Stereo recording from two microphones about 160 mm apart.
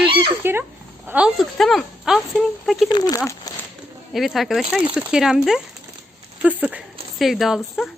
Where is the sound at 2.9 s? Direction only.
25° left (ahead or behind).